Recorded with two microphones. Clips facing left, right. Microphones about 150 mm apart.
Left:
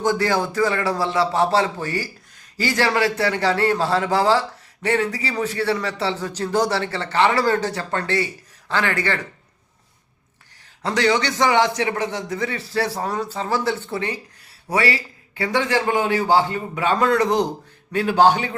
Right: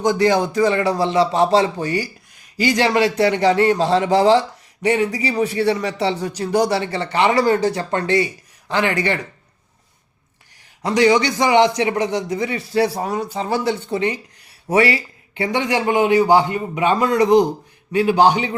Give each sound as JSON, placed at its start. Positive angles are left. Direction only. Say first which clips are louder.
{"t": 0.0, "sound": "a man's voice", "louder": "right 4 dB", "side_deg": -15}
{"t": 10.8, "sound": "a man's voice", "louder": "right 5 dB", "side_deg": -15}